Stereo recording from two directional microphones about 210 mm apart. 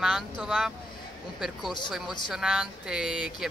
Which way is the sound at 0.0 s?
5° right (ahead or behind).